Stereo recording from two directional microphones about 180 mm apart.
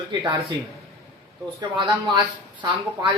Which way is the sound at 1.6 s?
25° right (ahead or behind).